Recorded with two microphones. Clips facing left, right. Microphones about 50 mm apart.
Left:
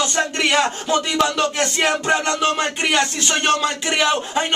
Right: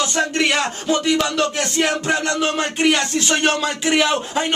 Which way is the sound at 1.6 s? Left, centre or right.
Centre.